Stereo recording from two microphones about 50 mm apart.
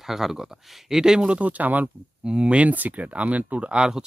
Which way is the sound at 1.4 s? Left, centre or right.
Right.